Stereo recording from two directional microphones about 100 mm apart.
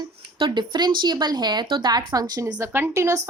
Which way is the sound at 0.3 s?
50° right (ahead or behind).